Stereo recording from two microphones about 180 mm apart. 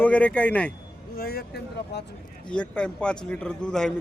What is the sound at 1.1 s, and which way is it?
Speech, 60° left (ahead or behind).